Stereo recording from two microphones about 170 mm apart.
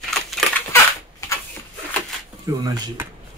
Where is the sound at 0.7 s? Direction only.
15° left (ahead or behind).